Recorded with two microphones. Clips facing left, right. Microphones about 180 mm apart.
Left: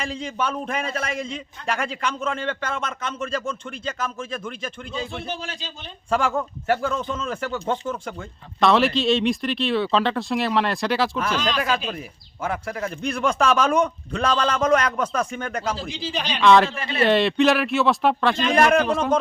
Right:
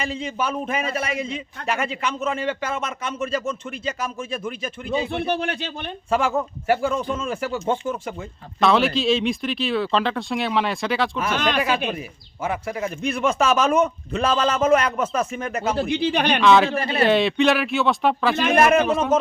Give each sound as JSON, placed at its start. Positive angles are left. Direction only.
{"t": 0.0, "sound": "a man's voice", "side_deg": -5}
{"t": 4.9, "sound": "speech", "side_deg": -60}
{"t": 6.1, "sound": "a man's voice", "side_deg": -5}
{"t": 11.3, "sound": "speech", "side_deg": -60}
{"t": 11.9, "sound": "a man's voice", "side_deg": -5}
{"t": 15.7, "sound": "speech", "side_deg": -60}
{"t": 16.4, "sound": "a man's voice", "side_deg": 0}